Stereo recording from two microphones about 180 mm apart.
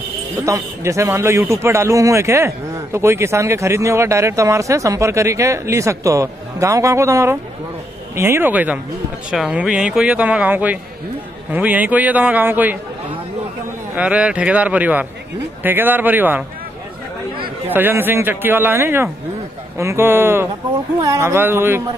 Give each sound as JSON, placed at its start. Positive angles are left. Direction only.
{"t": 0.5, "sound": "speech", "side_deg": -15}
{"t": 13.9, "sound": "speech", "side_deg": -5}
{"t": 17.6, "sound": "speech", "side_deg": -10}